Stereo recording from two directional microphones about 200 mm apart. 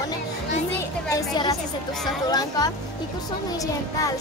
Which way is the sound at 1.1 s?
15° left (ahead or behind).